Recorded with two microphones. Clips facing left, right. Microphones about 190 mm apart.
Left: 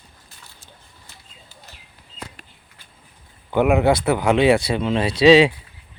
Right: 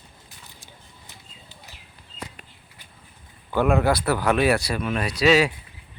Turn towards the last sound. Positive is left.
turn(degrees=25)  # may be behind; listen again after turning